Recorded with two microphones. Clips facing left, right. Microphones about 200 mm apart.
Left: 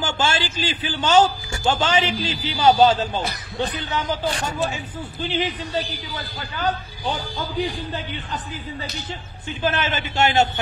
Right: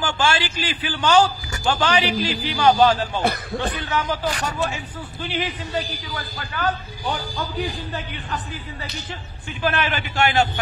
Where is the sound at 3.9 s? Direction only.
25° left (ahead or behind).